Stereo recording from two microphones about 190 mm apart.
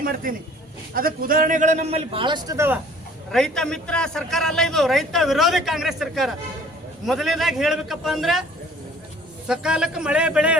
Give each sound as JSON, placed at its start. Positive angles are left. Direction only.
{"t": 0.0, "sound": "a man's voice", "side_deg": -50}
{"t": 3.3, "sound": "a man's voice", "side_deg": 5}
{"t": 9.5, "sound": "a man's voice", "side_deg": -5}